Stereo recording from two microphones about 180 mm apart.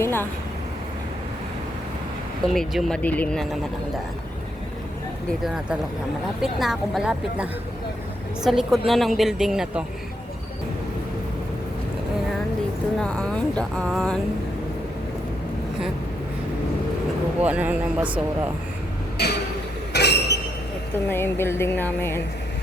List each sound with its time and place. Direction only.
0.0 s vehicle: 10° left (ahead or behind)
2.5 s a woman's voice: centre (ahead or behind)
6.4 s a woman's voice: centre (ahead or behind)
8.4 s a woman's voice: centre (ahead or behind)
13.0 s a woman's voice: 5° left (ahead or behind)
17.4 s speech: 10° right (ahead or behind)
19.1 s a sound: 65° left (ahead or behind)
19.9 s train: 65° left (ahead or behind)
20.9 s a woman's voice: 10° left (ahead or behind)